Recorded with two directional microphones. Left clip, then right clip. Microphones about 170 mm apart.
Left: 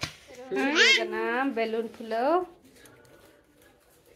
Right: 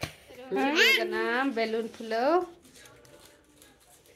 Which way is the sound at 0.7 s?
20° right (ahead or behind).